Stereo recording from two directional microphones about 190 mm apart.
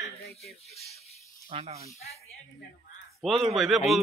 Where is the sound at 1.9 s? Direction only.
35° left (ahead or behind).